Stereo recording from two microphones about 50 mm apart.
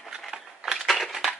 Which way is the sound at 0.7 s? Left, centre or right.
Centre.